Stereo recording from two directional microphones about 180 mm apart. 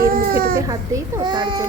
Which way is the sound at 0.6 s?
20° right (ahead or behind).